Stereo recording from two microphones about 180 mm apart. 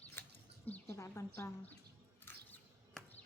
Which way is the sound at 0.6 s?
10° left (ahead or behind).